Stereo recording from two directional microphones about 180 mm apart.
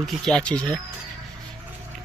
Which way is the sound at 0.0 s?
Centre (ahead or behind).